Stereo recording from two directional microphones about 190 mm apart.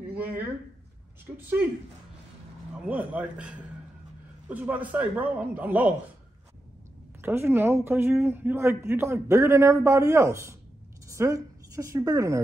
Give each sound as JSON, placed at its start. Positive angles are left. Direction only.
{"t": 0.1, "sound": "speech", "side_deg": -10}
{"t": 2.9, "sound": "speech", "side_deg": -10}
{"t": 7.2, "sound": "a woman's voice", "side_deg": -10}